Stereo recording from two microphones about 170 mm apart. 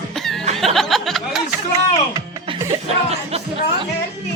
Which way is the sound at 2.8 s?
40° right (ahead or behind).